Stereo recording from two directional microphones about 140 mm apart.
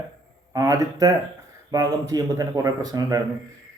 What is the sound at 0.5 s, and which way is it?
Speech, 25° right (ahead or behind).